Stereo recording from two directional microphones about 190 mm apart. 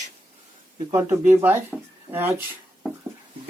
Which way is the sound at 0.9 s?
15° right (ahead or behind).